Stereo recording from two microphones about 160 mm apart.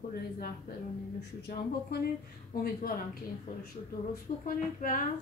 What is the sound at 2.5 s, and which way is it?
Speech, 65° left (ahead or behind).